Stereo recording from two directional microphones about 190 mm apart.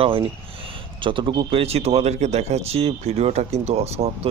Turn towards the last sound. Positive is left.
turn(degrees=-35)  # may be behind; listen again after turning